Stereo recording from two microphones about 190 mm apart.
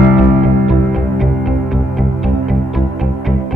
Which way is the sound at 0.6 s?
Centre (ahead or behind).